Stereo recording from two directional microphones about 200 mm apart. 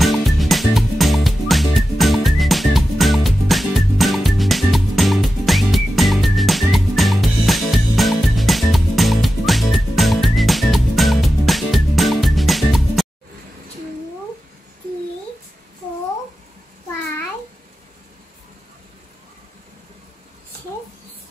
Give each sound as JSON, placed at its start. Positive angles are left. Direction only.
{"t": 0.0, "sound": "music", "side_deg": 0}